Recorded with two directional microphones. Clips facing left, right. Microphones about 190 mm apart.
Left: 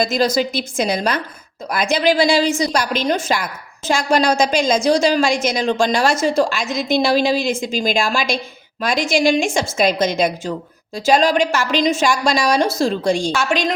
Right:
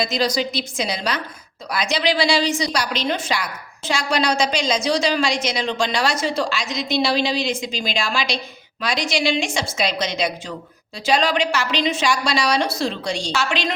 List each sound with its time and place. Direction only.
0.0 s a woman's voice: 50° left (ahead or behind)